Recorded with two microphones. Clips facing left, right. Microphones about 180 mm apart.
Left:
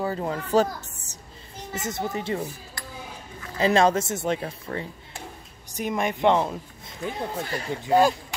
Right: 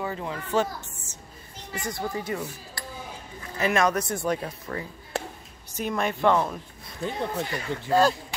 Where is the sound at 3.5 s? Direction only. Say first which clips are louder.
Left 4 dB; 30° left (ahead or behind).